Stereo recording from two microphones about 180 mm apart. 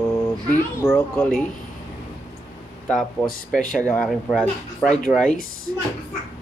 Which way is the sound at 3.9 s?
Centre (ahead or behind).